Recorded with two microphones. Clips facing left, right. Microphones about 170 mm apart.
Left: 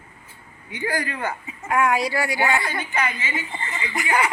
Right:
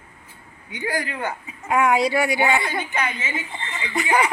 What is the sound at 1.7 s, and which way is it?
A woman's voice, 20° right (ahead or behind).